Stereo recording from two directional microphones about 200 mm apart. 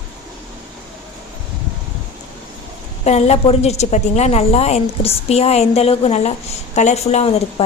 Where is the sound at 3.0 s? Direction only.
35° left (ahead or behind).